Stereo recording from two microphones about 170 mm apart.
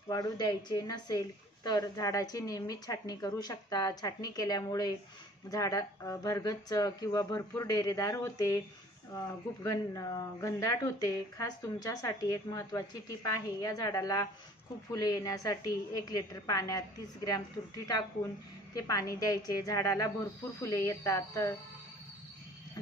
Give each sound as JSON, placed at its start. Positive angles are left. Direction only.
{"t": 0.1, "sound": "speech", "side_deg": 25}
{"t": 18.8, "sound": "a woman's voice", "side_deg": 20}